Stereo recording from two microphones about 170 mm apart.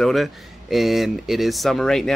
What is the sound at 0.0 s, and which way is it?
Speech, centre (ahead or behind).